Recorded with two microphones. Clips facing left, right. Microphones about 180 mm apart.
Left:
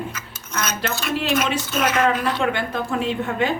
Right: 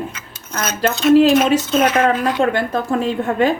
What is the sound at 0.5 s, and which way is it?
Speech, 55° right (ahead or behind).